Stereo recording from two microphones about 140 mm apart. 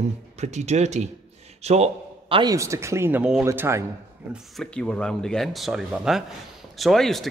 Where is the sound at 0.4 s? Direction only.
55° right (ahead or behind).